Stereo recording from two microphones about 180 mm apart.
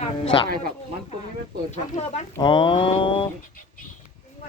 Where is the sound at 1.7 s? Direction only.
40° left (ahead or behind).